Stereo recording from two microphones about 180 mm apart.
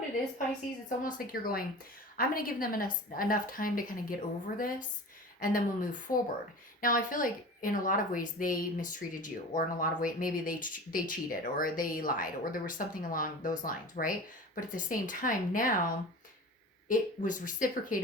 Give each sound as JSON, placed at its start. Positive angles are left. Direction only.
{"t": 0.9, "sound": "speech", "side_deg": 50}